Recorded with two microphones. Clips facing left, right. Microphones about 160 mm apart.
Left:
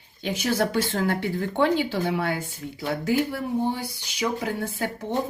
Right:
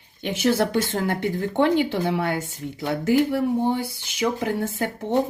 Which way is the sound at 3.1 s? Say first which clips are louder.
Right 6 dB; 60° right (ahead or behind).